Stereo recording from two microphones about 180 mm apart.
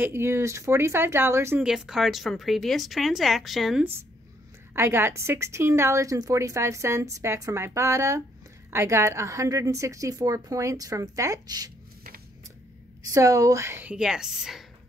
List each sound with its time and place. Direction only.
0.0 s a woman's voice: 15° right (ahead or behind)
1.6 s speech: centre (ahead or behind)
4.7 s a woman's voice: 15° right (ahead or behind)
13.1 s a woman's voice: 20° right (ahead or behind)